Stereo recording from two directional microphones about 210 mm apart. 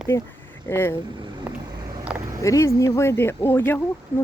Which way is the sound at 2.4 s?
15° left (ahead or behind).